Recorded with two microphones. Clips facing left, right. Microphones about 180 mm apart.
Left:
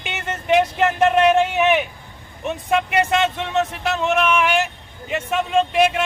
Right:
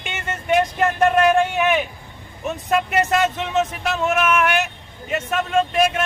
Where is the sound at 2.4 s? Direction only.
Centre (ahead or behind).